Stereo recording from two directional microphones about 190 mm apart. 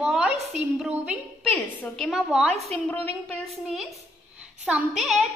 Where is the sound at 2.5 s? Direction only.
35° right (ahead or behind).